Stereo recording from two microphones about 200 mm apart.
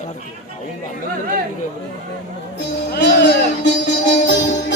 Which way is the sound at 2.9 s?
60° left (ahead or behind).